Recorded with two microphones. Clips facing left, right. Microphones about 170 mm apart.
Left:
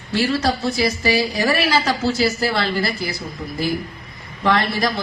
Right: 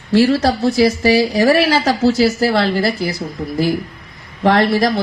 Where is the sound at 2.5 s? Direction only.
65° right (ahead or behind).